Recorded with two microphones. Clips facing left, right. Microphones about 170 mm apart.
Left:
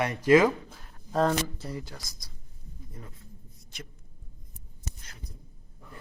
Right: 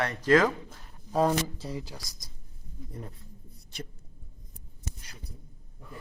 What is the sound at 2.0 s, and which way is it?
Speech, 35° right (ahead or behind).